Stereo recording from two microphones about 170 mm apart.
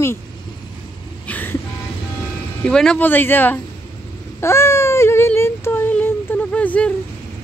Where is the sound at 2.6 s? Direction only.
5° left (ahead or behind).